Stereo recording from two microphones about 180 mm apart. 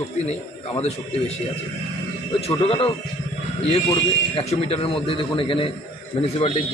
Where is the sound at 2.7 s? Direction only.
30° left (ahead or behind).